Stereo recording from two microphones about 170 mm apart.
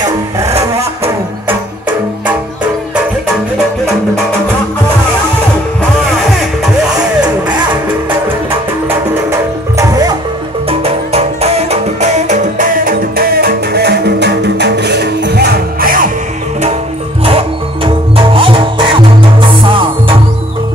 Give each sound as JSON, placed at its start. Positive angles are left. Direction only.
{"t": 1.5, "sound": "music", "side_deg": -10}
{"t": 9.3, "sound": "music", "side_deg": -20}
{"t": 10.7, "sound": "music", "side_deg": -35}
{"t": 17.2, "sound": "music", "side_deg": -35}